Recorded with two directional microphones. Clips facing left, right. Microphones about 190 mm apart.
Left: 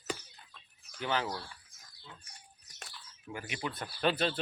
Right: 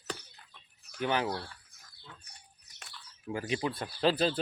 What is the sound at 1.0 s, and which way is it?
Speech, 15° right (ahead or behind).